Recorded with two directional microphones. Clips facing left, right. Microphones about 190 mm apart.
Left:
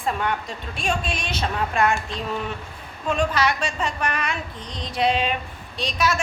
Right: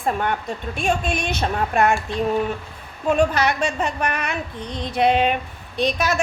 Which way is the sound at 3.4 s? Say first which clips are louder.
Right 3 dB; 55° right (ahead or behind).